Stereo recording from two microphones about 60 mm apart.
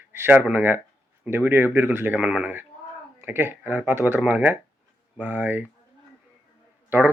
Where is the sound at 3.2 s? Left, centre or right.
Right.